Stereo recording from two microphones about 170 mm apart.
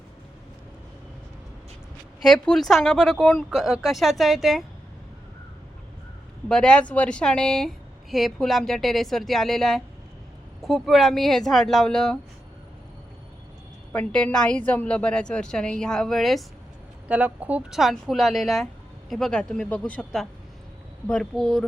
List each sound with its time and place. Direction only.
2.2 s a woman's voice: 5° left (ahead or behind)
6.5 s a woman's voice: 5° left (ahead or behind)
13.9 s a woman's voice: 5° left (ahead or behind)